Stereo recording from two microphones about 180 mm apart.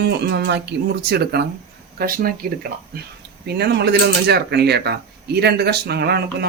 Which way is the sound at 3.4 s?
65° right (ahead or behind).